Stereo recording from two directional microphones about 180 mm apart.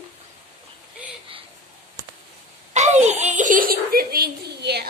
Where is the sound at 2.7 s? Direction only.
40° right (ahead or behind).